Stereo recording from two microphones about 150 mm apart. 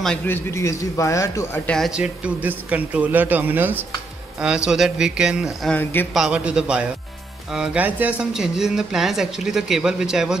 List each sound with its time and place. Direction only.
0.3 s a man's voice: 20° left (ahead or behind)
1.7 s speech: centre (ahead or behind)
5.8 s speech: 15° left (ahead or behind)
6.1 s speech: 5° right (ahead or behind)